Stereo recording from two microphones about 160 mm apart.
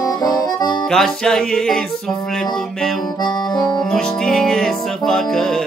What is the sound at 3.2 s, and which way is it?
Accordion, 25° left (ahead or behind).